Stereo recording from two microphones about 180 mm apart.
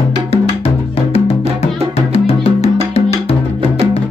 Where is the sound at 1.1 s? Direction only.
35° left (ahead or behind).